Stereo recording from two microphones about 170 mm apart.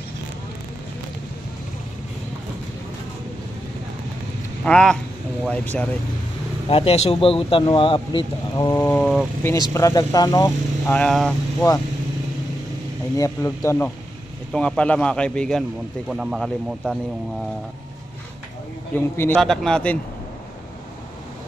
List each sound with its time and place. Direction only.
4.6 s a man's voice: 5° left (ahead or behind)
6.7 s a man's voice: 35° left (ahead or behind)
8.7 s speech: 10° left (ahead or behind)
11.0 s a man's voice: 5° left (ahead or behind)
13.2 s a man's voice: 20° left (ahead or behind); by 17.0 s centre (ahead or behind)
18.9 s speech: 15° left (ahead or behind)
19.3 s a man's voice: centre (ahead or behind)